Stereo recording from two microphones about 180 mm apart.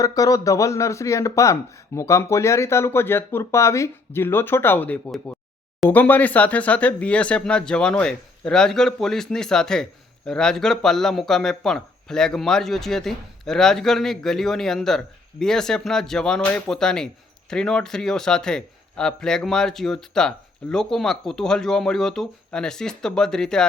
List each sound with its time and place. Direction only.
0.0 s speech: 20° left (ahead or behind); by 23.6 s 5° left (ahead or behind)